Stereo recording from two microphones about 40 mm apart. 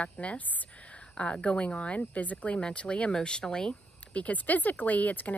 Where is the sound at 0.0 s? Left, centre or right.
Left.